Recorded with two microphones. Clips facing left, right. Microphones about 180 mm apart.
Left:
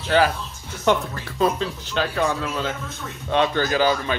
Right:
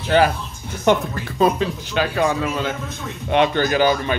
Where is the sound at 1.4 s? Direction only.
10° right (ahead or behind).